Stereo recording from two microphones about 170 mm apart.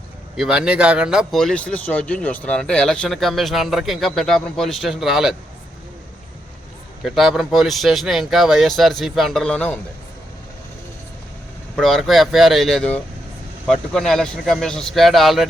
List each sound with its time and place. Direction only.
0.3 s speech: 5° right (ahead or behind)
7.0 s speech: centre (ahead or behind)
11.8 s speech: centre (ahead or behind)